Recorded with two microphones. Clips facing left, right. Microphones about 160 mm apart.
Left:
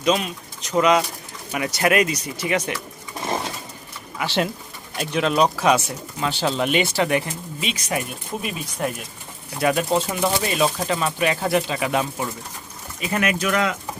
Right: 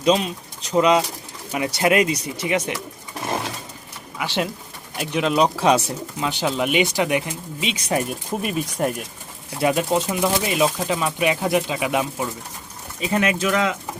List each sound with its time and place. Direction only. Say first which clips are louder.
0.0 s pigeon: right 2 dB; 30° right (ahead or behind)
0.8 s speech: right 1 dB; 25° right (ahead or behind)
4.2 s speech: left 1 dB; 10° right (ahead or behind)
5.5 s speech: right 1 dB; 30° right (ahead or behind)
6.1 s speech: even; 15° right (ahead or behind)
7.9 s speech: right 7 dB; 40° right (ahead or behind)
9.6 s speech: even; 20° right (ahead or behind)
10.1 s speech: right 1 dB; 10° right (ahead or behind)